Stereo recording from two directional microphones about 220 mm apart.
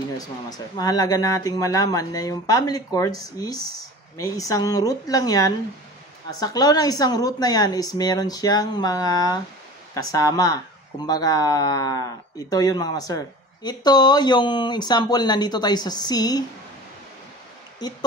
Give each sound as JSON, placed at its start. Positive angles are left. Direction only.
{"t": 0.2, "sound": "speech", "side_deg": 15}